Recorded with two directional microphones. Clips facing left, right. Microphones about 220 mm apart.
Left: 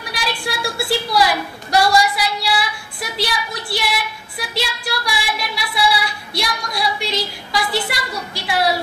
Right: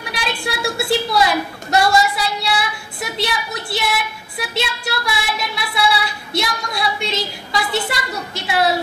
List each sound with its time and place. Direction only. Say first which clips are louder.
0.0 s a woman's voice: right 1 dB; 25° right (ahead or behind)
3.0 s music: right 1 dB; 25° right (ahead or behind)